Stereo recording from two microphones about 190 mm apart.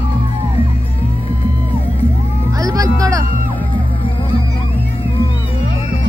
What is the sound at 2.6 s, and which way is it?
Music, 20° right (ahead or behind).